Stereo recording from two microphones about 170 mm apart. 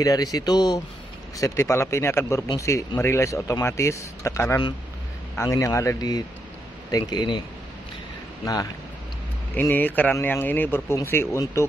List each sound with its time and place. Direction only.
0.0 s speech: 20° left (ahead or behind)
9.6 s speech: 10° left (ahead or behind)